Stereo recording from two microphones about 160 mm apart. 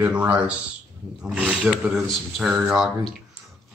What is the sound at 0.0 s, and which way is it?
A woman's voice, 10° right (ahead or behind).